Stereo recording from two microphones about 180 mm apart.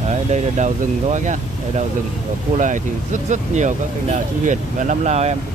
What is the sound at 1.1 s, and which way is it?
Speech, 45° right (ahead or behind).